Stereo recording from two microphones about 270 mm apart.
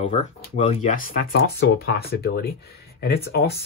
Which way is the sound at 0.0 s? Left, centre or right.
Left.